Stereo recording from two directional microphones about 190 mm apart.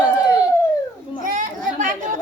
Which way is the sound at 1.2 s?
45° right (ahead or behind).